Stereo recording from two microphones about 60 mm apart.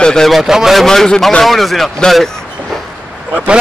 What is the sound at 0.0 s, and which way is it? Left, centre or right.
Speech, centre.